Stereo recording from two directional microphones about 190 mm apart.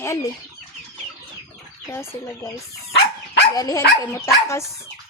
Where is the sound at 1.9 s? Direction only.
15° left (ahead or behind).